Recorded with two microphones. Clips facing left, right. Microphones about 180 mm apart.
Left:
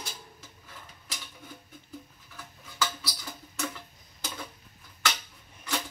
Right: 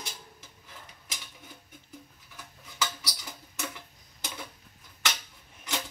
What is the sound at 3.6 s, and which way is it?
Tick-tock, 15° right (ahead or behind).